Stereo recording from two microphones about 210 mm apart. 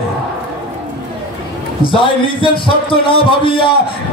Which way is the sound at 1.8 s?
25° left (ahead or behind).